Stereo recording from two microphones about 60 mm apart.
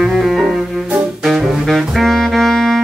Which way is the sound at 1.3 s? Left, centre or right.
Centre.